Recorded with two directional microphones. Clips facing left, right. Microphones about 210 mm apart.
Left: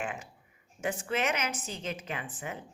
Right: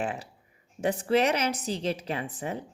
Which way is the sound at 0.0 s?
35° right (ahead or behind).